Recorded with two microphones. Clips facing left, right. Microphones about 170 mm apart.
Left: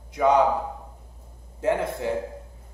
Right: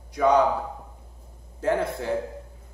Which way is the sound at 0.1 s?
20° left (ahead or behind).